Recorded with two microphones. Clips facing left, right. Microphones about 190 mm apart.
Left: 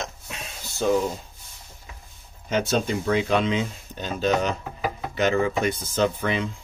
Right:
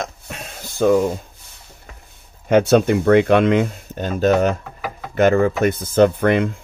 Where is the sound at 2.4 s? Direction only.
65° right (ahead or behind).